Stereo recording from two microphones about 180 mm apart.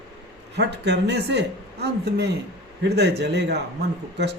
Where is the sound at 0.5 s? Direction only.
70° right (ahead or behind).